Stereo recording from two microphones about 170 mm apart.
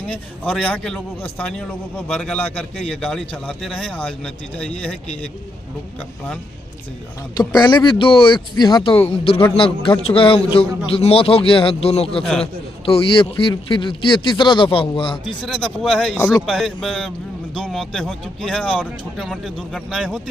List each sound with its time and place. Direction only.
0.1 s a man's voice: 5° left (ahead or behind)
2.1 s a man's voice: 5° left (ahead or behind)
7.3 s speech: 25° left (ahead or behind)
12.2 s a man's voice: 5° left (ahead or behind)
12.8 s speech: 35° left (ahead or behind)
15.4 s a man's voice: 5° left (ahead or behind)